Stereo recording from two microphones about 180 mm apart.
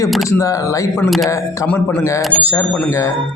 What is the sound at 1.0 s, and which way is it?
Speech, centre (ahead or behind).